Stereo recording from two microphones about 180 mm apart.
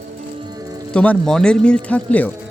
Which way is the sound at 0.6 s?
20° right (ahead or behind).